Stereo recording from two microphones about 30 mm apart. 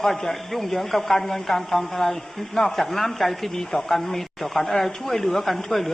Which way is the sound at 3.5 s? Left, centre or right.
Centre.